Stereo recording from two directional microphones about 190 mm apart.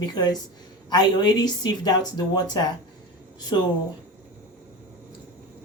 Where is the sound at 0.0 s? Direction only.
20° left (ahead or behind).